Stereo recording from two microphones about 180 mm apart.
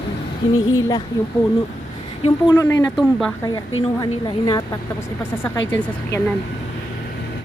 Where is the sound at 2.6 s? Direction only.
15° left (ahead or behind).